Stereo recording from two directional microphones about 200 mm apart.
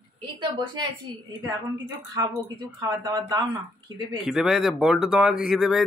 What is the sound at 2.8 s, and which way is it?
Speech, 20° right (ahead or behind).